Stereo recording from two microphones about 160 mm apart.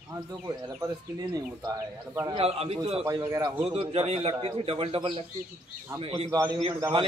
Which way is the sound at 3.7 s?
35° right (ahead or behind).